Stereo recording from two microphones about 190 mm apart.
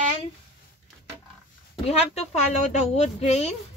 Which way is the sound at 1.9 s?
35° left (ahead or behind).